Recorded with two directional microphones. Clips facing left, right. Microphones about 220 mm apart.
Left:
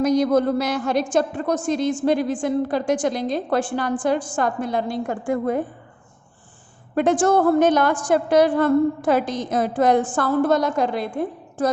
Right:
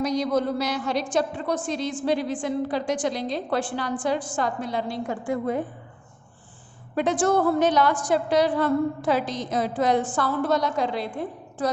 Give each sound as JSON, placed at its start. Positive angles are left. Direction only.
{"t": 0.0, "sound": "a woman's voice", "side_deg": 50}
{"t": 6.9, "sound": "a woman's voice", "side_deg": 50}